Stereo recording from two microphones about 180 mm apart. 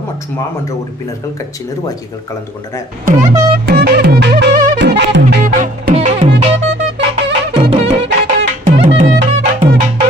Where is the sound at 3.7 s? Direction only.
60° right (ahead or behind); by 5.2 s 80° right.